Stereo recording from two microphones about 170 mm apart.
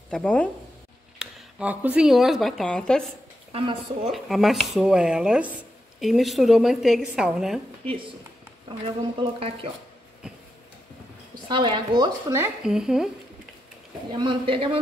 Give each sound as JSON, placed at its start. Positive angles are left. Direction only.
{"t": 0.1, "sound": "speech", "side_deg": 5}
{"t": 1.2, "sound": "speech", "side_deg": -10}
{"t": 3.5, "sound": "speech", "side_deg": -30}
{"t": 4.1, "sound": "speech", "side_deg": 0}
{"t": 7.8, "sound": "speech", "side_deg": -30}
{"t": 11.4, "sound": "speech", "side_deg": -30}
{"t": 12.4, "sound": "speech", "side_deg": -5}
{"t": 14.1, "sound": "speech", "side_deg": -30}